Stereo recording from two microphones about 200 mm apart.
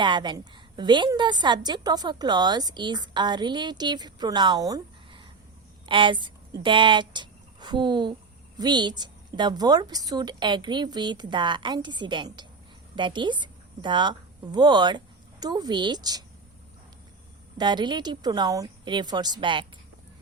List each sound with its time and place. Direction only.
0.0 s a woman's voice: 25° right (ahead or behind)
17.6 s a woman's voice: 20° right (ahead or behind)